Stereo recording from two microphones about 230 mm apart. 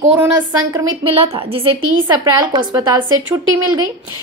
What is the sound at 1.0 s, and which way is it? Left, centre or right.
A child's voice, right.